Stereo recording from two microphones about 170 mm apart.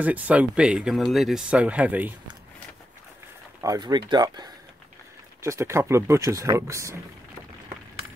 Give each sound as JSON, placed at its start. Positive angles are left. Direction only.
{"t": 0.0, "sound": "speech", "side_deg": -10}
{"t": 3.6, "sound": "speech", "side_deg": -25}